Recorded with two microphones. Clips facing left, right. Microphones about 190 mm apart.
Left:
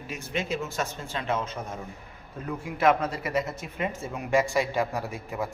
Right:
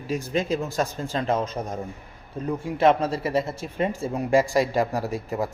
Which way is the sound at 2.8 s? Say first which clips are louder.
Right 3 dB; 30° right (ahead or behind).